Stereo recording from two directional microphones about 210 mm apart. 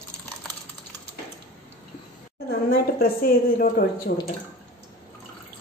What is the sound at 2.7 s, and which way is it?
A woman's voice, 45° left (ahead or behind).